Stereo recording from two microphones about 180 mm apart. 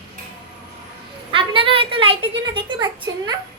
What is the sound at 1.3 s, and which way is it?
A woman's voice, 30° right (ahead or behind).